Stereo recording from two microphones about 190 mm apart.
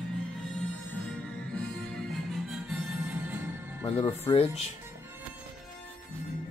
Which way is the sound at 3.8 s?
30° left (ahead or behind).